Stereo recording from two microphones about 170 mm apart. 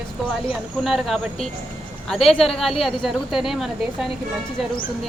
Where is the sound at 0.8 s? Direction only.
Centre (ahead or behind).